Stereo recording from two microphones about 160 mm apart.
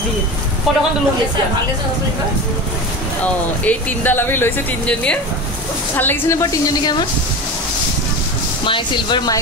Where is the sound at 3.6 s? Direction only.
10° left (ahead or behind).